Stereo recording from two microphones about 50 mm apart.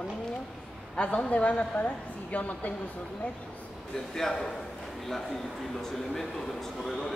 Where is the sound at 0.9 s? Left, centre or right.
Left.